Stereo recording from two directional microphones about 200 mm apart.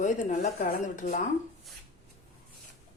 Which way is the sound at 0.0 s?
40° left (ahead or behind).